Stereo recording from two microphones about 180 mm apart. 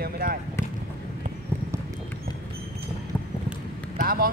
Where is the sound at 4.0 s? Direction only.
55° right (ahead or behind).